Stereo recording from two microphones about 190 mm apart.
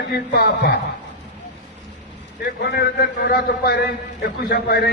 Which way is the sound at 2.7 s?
55° left (ahead or behind).